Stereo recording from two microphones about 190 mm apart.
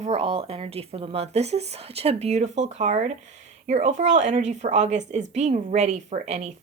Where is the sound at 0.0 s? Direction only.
35° right (ahead or behind).